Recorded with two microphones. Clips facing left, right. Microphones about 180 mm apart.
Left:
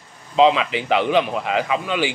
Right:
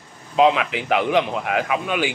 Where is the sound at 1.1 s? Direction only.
20° right (ahead or behind).